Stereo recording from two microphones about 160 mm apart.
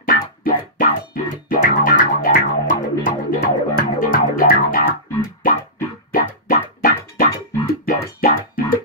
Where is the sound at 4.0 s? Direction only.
60° left (ahead or behind).